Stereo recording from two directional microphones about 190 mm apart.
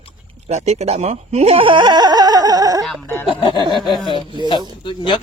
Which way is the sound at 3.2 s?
25° left (ahead or behind).